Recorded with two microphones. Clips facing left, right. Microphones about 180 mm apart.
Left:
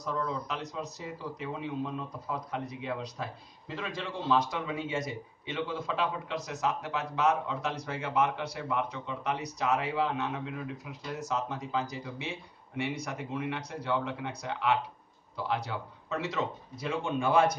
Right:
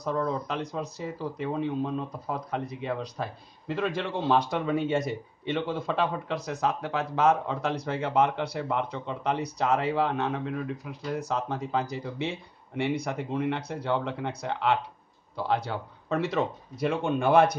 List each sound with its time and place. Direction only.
0.0 s speech: 55° right (ahead or behind)